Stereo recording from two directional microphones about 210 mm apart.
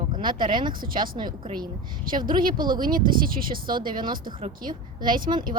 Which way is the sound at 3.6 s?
20° right (ahead or behind).